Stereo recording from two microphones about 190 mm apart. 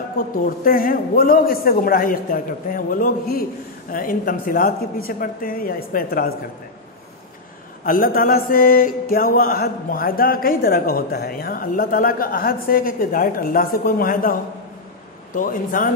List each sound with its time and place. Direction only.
0.2 s a man's voice: 45° left (ahead or behind)
7.8 s a man's voice: 45° left (ahead or behind)
15.3 s a man's voice: 45° left (ahead or behind)